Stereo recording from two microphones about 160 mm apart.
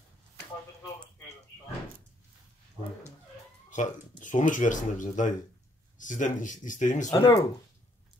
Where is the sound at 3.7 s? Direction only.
50° left (ahead or behind).